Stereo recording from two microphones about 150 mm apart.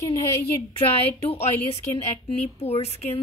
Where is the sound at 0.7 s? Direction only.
40° left (ahead or behind).